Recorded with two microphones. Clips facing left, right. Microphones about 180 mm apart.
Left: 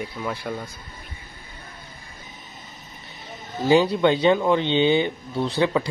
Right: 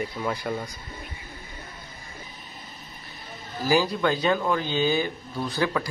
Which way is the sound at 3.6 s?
25° left (ahead or behind).